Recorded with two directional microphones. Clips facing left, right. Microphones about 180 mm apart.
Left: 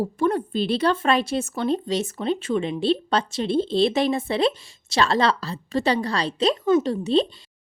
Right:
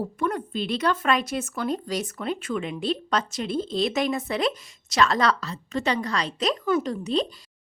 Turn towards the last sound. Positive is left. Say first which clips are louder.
# left 5 dB
turn(degrees=30)  # may be behind; listen again after turning